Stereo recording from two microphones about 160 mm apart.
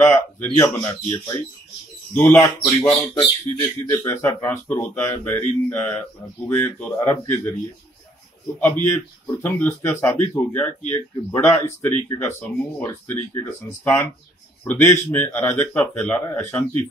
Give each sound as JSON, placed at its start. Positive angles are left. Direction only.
{"t": 0.0, "sound": "speech", "side_deg": 15}
{"t": 8.8, "sound": "speech", "side_deg": 10}